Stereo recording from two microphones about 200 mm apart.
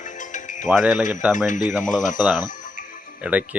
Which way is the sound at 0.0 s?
40° left (ahead or behind).